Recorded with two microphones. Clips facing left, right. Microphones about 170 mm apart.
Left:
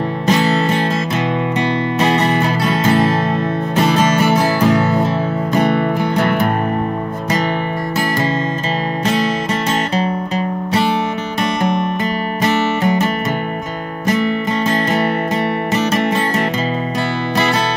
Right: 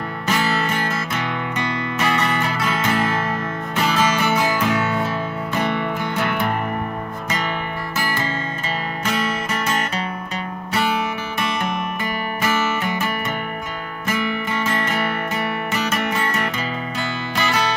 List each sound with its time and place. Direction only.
0.3 s music: 30° left (ahead or behind)
9.0 s music: 35° left (ahead or behind)
12.8 s music: 35° left (ahead or behind)